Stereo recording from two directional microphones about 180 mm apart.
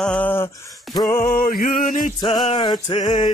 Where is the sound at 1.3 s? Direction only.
50° left (ahead or behind).